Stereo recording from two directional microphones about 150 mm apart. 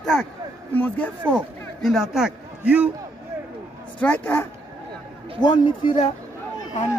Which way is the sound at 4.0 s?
10° left (ahead or behind).